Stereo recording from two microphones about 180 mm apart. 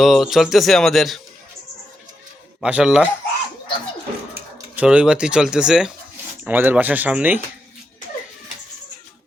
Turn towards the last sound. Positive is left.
turn(degrees=-10)  # may be behind; listen again after turning